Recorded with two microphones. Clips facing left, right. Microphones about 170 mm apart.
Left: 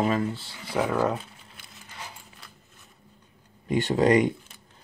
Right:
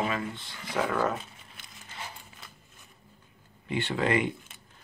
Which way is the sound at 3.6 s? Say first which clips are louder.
Left 7 dB; 40° left (ahead or behind).